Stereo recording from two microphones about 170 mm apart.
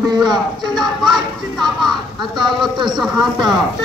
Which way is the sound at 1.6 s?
Centre (ahead or behind).